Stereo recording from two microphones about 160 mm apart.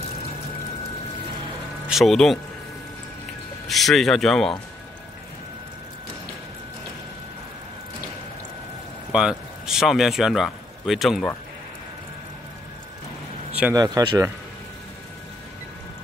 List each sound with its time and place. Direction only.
1.9 s speech: centre (ahead or behind)
3.6 s speech: centre (ahead or behind)
9.1 s speech: 5° right (ahead or behind)
13.5 s a sound: 10° right (ahead or behind)
13.7 s speech: 25° right (ahead or behind)